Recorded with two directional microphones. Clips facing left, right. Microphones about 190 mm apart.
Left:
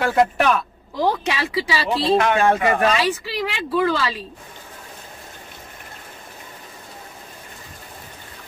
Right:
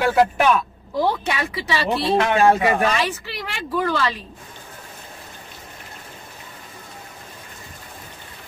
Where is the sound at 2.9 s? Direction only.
15° left (ahead or behind).